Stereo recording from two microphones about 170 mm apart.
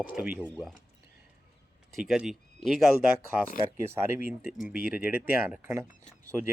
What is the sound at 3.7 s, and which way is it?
Speech, 15° right (ahead or behind).